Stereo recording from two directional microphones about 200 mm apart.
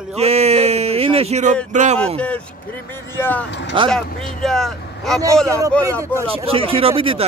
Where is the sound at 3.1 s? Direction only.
10° left (ahead or behind).